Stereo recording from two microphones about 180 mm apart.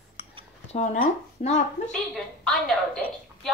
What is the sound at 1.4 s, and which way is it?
Speech, 40° left (ahead or behind).